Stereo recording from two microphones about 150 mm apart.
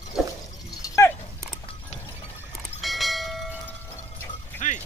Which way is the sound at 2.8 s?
Centre (ahead or behind).